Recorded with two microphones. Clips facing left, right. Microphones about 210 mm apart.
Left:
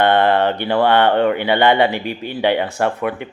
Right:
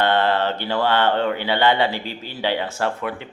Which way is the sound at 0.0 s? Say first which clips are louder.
Left 5 dB; 60° left (ahead or behind).